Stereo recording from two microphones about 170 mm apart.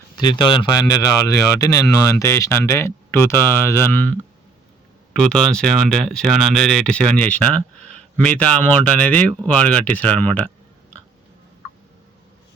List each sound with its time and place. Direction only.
0.2 s speech: 25° left (ahead or behind); by 10.5 s 10° left (ahead or behind)